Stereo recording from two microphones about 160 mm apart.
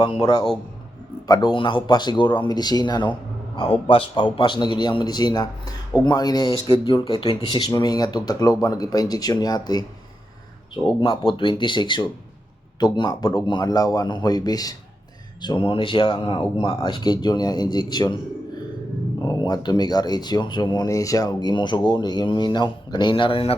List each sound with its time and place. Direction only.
0.0 s speech: 25° left (ahead or behind)
11.0 s speech: 25° left (ahead or behind)
19.2 s speech: 25° left (ahead or behind)